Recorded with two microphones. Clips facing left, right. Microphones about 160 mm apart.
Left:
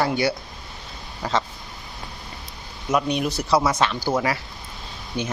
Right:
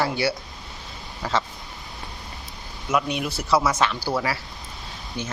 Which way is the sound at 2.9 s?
35° left (ahead or behind).